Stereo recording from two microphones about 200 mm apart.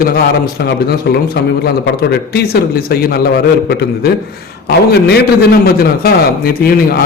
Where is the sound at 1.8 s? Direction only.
55° left (ahead or behind).